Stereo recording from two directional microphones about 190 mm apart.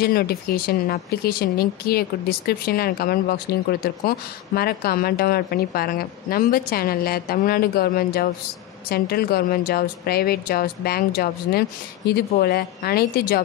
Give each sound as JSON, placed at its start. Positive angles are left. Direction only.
{"t": 0.0, "sound": "a woman's voice", "side_deg": 55}